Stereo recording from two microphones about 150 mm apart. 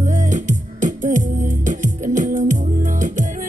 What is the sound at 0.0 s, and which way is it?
Music, 55° right (ahead or behind).